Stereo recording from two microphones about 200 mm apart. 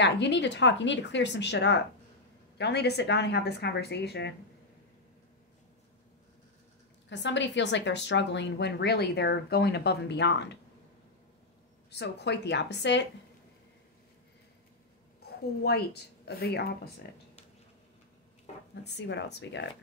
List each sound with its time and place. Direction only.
0.0 s a woman's voice: 60° left (ahead or behind)
7.1 s a woman's voice: 65° left (ahead or behind)
11.9 s a woman's voice: 55° left (ahead or behind)
15.2 s a woman's voice: 50° left (ahead or behind)
18.9 s a woman's voice: 60° left (ahead or behind)